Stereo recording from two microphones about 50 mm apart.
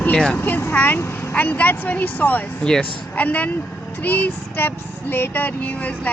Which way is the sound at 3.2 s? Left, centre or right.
Left.